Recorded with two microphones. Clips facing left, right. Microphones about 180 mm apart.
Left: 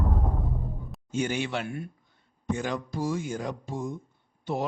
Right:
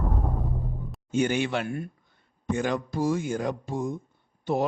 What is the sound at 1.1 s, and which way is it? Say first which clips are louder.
Speech: right 4 dB; 60° right (ahead or behind).